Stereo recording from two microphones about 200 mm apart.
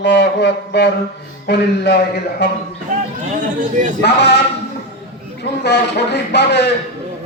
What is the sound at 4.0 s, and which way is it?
Speech, 55° left (ahead or behind).